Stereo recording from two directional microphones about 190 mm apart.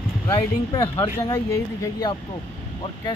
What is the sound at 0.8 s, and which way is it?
Speech, 30° left (ahead or behind).